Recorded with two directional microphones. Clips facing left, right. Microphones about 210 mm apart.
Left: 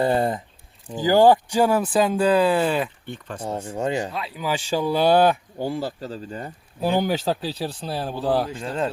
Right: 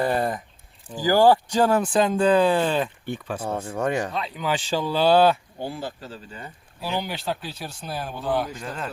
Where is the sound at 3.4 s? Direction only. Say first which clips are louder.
Left 1 dB; 10° left (ahead or behind).